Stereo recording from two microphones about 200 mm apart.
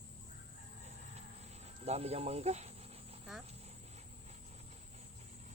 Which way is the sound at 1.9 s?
30° right (ahead or behind).